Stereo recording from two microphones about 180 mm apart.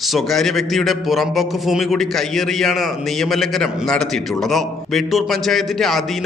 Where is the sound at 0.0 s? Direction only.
Centre (ahead or behind).